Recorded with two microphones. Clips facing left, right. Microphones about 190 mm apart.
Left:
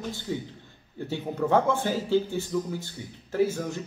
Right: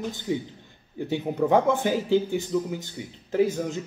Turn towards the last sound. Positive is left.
turn(degrees=-20)  # may be behind; listen again after turning